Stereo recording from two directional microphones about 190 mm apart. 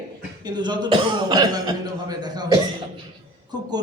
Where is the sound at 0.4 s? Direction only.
20° right (ahead or behind).